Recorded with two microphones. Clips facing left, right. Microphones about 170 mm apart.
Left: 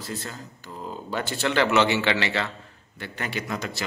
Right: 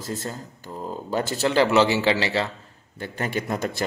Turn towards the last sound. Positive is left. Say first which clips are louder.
# right 5 dB
turn(degrees=-50)  # may be behind; listen again after turning